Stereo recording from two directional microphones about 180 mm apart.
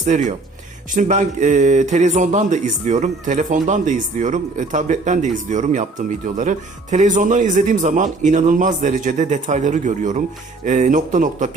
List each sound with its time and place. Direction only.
0.0 s speech: 45° right (ahead or behind)